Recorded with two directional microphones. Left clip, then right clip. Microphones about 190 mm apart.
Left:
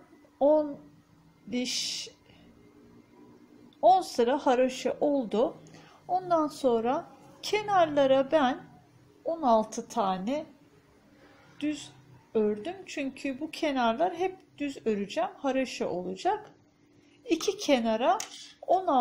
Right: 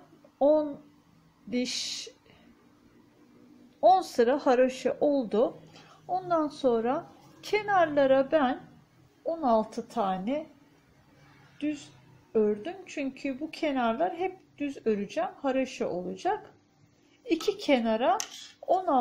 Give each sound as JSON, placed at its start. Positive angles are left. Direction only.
{"t": 0.4, "sound": "a child's voice", "side_deg": -10}
{"t": 3.8, "sound": "a woman's voice", "side_deg": -20}
{"t": 11.5, "sound": "a sound", "side_deg": -5}
{"t": 12.3, "sound": "a woman's voice", "side_deg": -5}